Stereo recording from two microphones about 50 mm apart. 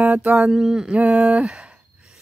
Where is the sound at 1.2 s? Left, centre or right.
Centre.